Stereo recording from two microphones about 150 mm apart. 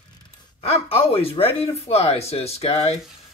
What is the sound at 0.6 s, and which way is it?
Speech, 40° left (ahead or behind).